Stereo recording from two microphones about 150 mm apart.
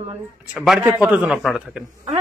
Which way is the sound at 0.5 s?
5° right (ahead or behind).